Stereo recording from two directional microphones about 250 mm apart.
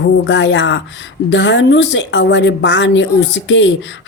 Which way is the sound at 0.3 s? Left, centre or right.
Left.